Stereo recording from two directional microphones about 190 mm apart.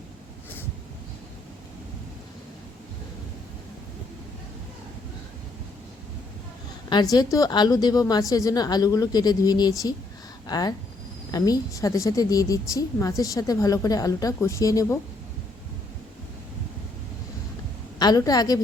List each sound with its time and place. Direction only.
6.9 s a woman's voice: 20° left (ahead or behind)
18.0 s a woman's voice: 20° left (ahead or behind)